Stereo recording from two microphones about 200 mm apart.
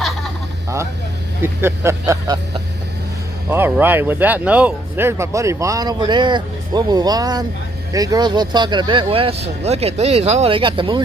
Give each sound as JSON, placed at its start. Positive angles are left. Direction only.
{"t": 1.4, "sound": "speech", "side_deg": -10}
{"t": 3.4, "sound": "speech", "side_deg": -10}